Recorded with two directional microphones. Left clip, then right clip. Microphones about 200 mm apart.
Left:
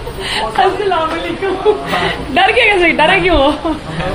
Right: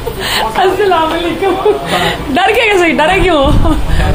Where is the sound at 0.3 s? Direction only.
40° right (ahead or behind).